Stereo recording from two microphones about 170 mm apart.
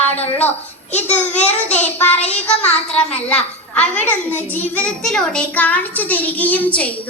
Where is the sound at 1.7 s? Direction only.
10° left (ahead or behind).